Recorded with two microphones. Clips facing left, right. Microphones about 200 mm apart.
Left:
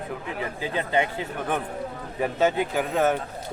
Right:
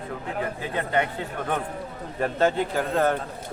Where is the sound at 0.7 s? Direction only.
20° left (ahead or behind).